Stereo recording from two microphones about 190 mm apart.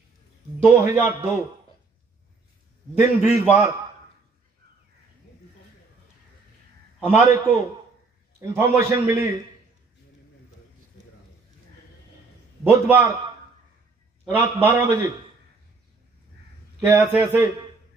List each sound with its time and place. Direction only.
0.6 s a man's voice: 15° right (ahead or behind)
2.9 s a man's voice: 10° right (ahead or behind)
7.0 s a man's voice: 10° right (ahead or behind)
8.4 s a man's voice: 15° right (ahead or behind)
12.6 s a man's voice: 10° right (ahead or behind)
14.3 s a man's voice: 10° right (ahead or behind)
16.8 s a man's voice: 15° right (ahead or behind)